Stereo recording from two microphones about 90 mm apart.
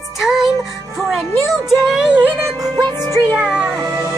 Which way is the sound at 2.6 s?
50° right (ahead or behind).